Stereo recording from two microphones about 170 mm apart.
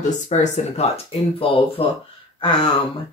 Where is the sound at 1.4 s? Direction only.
30° left (ahead or behind).